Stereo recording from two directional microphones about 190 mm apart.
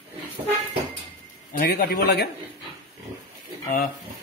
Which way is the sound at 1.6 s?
55° left (ahead or behind).